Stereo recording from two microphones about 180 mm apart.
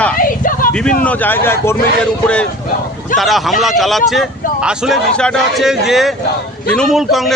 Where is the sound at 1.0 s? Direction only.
10° left (ahead or behind).